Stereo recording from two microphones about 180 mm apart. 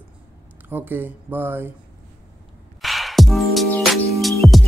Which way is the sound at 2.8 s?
Centre (ahead or behind).